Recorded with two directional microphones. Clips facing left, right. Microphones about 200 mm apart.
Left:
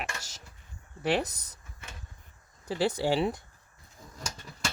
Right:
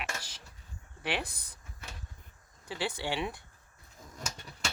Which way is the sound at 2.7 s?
40° left (ahead or behind).